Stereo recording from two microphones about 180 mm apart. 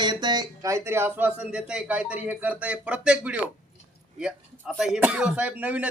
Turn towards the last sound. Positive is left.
turn(degrees=-10)  # may be behind; listen again after turning